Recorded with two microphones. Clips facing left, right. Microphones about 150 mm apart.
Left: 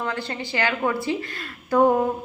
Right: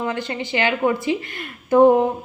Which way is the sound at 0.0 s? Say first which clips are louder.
Right 3 dB; 20° right (ahead or behind).